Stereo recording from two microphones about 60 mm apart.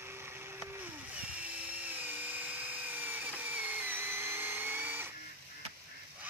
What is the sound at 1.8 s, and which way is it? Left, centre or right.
Drill, right.